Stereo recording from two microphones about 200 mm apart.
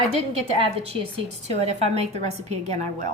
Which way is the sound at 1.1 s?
35° right (ahead or behind).